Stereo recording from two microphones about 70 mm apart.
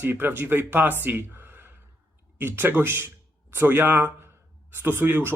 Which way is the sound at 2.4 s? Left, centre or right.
Right.